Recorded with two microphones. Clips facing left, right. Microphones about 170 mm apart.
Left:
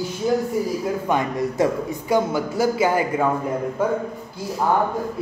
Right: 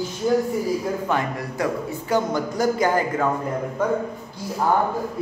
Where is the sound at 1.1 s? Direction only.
20° left (ahead or behind).